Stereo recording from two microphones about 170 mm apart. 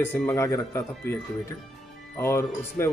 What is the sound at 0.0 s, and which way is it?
Speech, 15° left (ahead or behind).